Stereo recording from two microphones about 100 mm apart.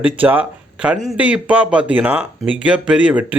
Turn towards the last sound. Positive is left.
turn(degrees=-15)  # may be behind; listen again after turning